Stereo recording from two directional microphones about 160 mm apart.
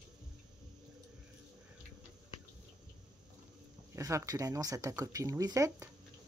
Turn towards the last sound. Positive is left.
turn(degrees=-20)  # may be behind; listen again after turning